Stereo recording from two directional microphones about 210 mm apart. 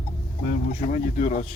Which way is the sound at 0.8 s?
35° left (ahead or behind).